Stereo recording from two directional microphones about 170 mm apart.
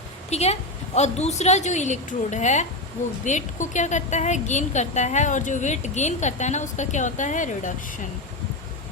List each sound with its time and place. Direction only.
0.3 s a woman's voice: 40° left (ahead or behind)